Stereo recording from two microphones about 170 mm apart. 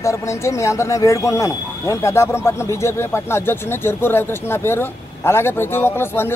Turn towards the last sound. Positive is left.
turn(degrees=15)  # may be behind; listen again after turning